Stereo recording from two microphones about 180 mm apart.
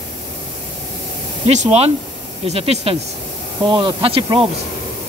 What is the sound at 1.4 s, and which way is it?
Speech, 40° right (ahead or behind).